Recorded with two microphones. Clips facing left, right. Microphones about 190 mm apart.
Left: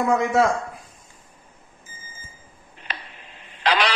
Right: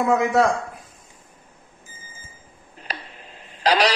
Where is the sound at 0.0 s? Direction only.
Centre (ahead or behind).